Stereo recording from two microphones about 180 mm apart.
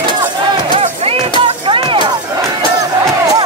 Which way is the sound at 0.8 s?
35° right (ahead or behind).